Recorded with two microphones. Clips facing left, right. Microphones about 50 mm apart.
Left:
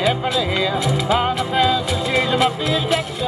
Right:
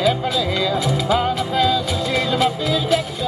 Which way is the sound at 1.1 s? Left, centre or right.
Left.